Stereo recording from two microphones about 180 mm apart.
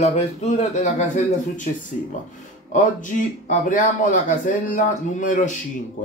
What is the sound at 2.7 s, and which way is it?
Speech, 45° left (ahead or behind).